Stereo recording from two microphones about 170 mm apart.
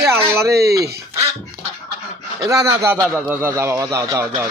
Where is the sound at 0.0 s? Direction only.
15° right (ahead or behind).